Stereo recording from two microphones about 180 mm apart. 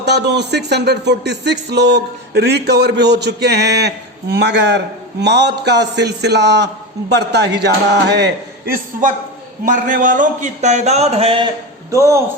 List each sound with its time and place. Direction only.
0.0 s a sound: 70° right (ahead or behind)
9.6 s a man's voice: 45° right (ahead or behind)
11.9 s speech: 15° right (ahead or behind)